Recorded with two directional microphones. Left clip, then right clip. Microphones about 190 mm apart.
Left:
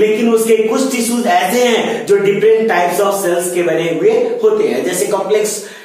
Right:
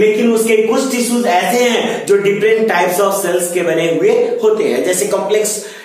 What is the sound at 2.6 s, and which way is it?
A man's voice, 25° right (ahead or behind).